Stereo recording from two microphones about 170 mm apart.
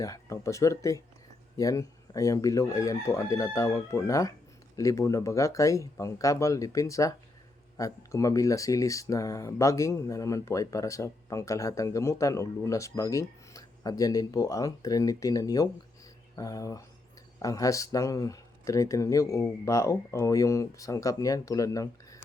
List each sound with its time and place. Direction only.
0.0 s speech: 20° left (ahead or behind)